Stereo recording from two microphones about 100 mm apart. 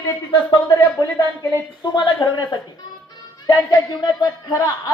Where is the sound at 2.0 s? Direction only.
45° left (ahead or behind).